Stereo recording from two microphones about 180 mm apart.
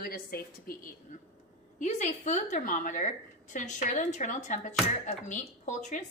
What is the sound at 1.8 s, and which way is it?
A woman's voice, 40° left (ahead or behind).